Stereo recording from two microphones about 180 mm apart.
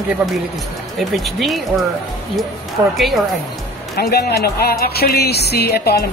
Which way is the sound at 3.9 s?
65° left (ahead or behind).